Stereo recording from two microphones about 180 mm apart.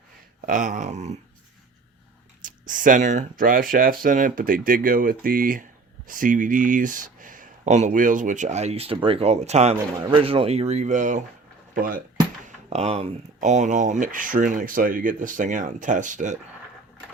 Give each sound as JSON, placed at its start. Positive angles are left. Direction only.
{"t": 0.4, "sound": "speech", "side_deg": -45}
{"t": 2.4, "sound": "speech", "side_deg": -45}
{"t": 12.5, "sound": "speech", "side_deg": -35}